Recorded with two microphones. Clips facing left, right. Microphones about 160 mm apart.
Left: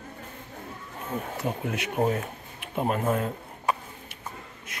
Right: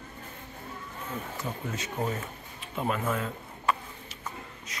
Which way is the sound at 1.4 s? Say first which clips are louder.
Left 5 dB; 60° left (ahead or behind).